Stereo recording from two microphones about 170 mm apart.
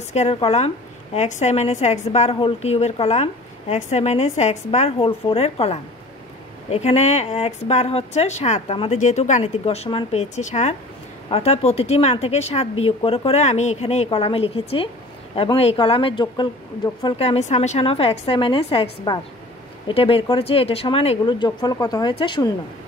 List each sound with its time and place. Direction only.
0.1 s a woman's voice: 40° left (ahead or behind)